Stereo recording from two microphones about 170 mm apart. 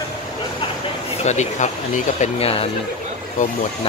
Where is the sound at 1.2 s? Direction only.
40° left (ahead or behind).